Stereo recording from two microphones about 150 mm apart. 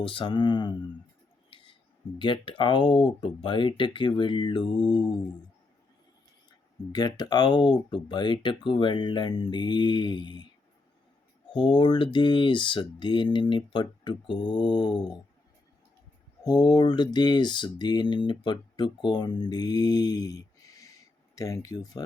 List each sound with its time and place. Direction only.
0.0 s speech: 35° left (ahead or behind)
1.5 s a sound: 35° left (ahead or behind)
2.1 s speech: 30° left (ahead or behind)
6.9 s speech: 30° left (ahead or behind)
11.5 s speech: 30° left (ahead or behind)
16.4 s speech: 25° left (ahead or behind)